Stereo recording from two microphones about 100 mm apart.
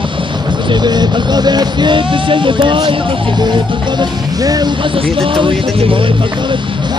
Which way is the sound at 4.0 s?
40° right (ahead or behind).